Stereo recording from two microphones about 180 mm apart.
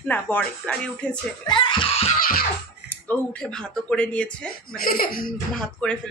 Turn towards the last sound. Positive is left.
turn(degrees=5)  # may be behind; listen again after turning